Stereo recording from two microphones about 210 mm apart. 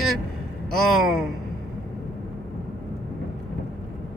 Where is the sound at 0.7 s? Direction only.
Centre (ahead or behind).